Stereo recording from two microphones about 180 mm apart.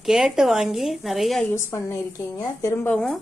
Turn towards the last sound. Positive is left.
turn(degrees=5)  # may be behind; listen again after turning